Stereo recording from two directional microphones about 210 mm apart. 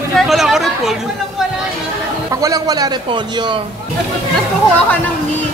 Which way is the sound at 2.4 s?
15° right (ahead or behind).